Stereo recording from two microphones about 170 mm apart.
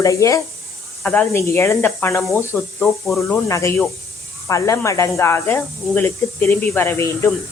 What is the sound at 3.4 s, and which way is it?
Speech, 15° left (ahead or behind).